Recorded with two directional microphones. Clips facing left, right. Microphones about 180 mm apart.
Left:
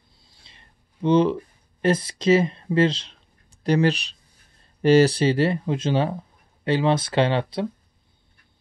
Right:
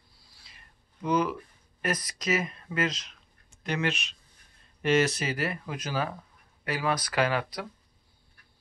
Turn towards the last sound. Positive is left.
turn(degrees=25)  # may be behind; listen again after turning